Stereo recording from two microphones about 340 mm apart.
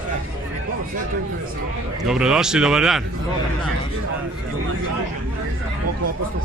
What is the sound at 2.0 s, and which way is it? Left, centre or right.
A man's voice, centre.